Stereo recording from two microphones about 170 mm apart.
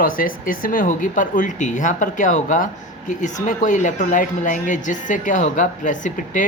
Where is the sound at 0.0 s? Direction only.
55° left (ahead or behind).